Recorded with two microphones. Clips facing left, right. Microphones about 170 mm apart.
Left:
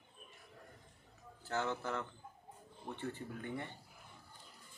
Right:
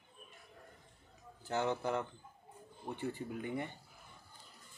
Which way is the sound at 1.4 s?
15° right (ahead or behind).